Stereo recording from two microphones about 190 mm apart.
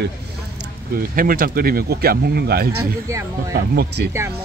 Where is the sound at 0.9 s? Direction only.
50° right (ahead or behind).